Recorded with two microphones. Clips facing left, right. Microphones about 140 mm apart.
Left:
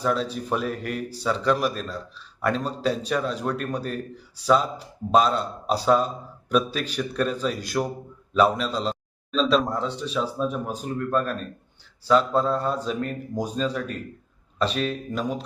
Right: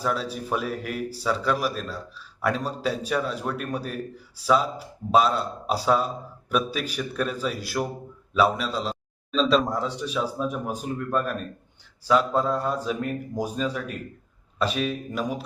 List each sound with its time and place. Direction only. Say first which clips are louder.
0.0 s speech: left 2 dB; 5° right (ahead or behind)